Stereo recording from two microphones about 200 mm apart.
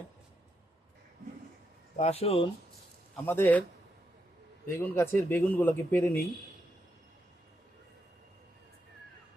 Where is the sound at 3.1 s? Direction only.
10° left (ahead or behind).